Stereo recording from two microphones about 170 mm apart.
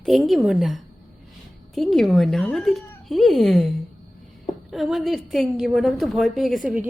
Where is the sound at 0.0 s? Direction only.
Centre (ahead or behind).